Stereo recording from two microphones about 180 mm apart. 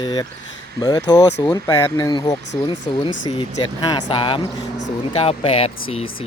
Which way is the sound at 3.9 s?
30° left (ahead or behind).